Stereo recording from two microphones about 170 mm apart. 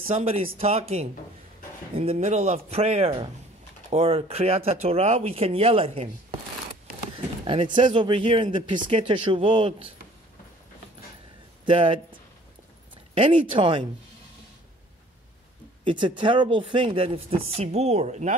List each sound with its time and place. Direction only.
0.2 s speech: 35° right (ahead or behind)
7.4 s speech: 30° right (ahead or behind)
11.6 s speech: 30° right (ahead or behind)
15.8 s speech: 30° right (ahead or behind)